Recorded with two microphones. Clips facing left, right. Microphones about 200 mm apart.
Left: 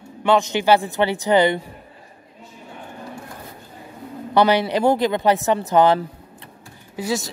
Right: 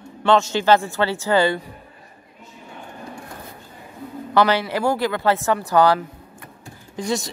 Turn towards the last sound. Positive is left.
turn(degrees=5)  # may be behind; listen again after turning